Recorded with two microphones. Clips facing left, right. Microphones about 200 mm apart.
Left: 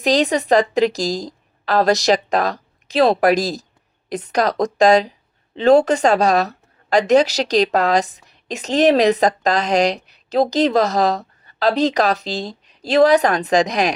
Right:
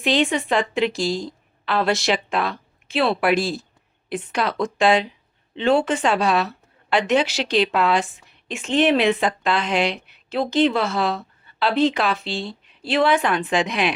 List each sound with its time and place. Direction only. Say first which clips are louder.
0.0 s a woman's voice: left 3 dB; 40° left (ahead or behind)